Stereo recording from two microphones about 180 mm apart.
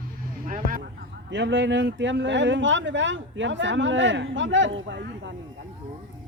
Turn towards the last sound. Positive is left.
turn(degrees=-90)